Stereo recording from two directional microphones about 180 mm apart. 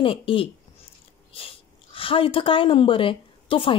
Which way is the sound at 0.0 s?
30° left (ahead or behind).